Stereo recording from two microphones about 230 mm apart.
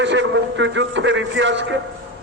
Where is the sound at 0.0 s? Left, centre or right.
Right.